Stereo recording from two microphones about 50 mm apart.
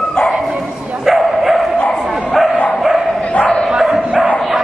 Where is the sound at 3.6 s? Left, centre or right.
Centre.